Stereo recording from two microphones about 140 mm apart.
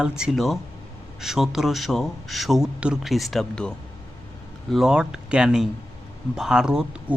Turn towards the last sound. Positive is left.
turn(degrees=-5)  # may be behind; listen again after turning